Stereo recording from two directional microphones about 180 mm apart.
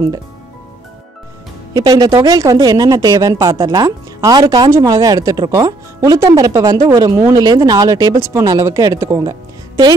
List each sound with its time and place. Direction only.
1.7 s speech: 20° right (ahead or behind)